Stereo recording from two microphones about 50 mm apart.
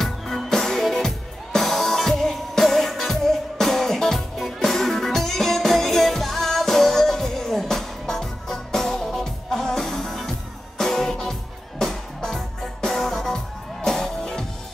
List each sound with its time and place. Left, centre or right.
0.0 s music: centre